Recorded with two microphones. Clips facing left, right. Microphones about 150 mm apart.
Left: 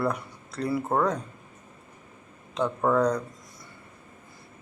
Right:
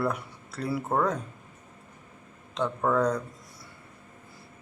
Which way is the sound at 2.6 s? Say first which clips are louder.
Left 2 dB; 5° left (ahead or behind).